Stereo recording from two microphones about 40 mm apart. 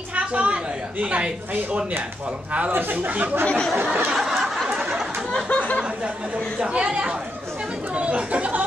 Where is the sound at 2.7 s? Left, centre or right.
Right.